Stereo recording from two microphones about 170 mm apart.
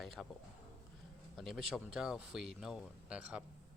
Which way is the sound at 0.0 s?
Centre (ahead or behind).